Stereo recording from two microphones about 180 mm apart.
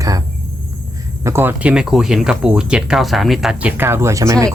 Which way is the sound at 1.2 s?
10° right (ahead or behind).